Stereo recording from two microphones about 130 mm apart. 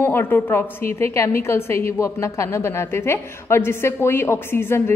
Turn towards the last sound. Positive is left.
turn(degrees=15)  # may be behind; listen again after turning